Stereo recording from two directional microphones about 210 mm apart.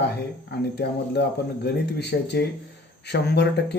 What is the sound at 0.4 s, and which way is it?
Speech, 50° left (ahead or behind).